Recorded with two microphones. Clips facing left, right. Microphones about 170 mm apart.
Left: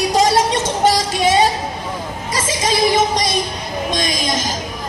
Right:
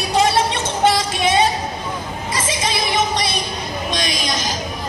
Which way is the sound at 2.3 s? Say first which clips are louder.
Left 5 dB; 45° left (ahead or behind).